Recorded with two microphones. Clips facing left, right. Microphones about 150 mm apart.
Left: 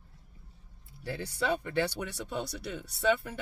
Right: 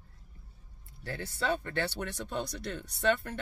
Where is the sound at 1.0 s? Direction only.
10° left (ahead or behind).